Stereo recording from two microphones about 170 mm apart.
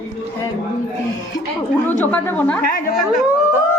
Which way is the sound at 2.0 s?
10° left (ahead or behind).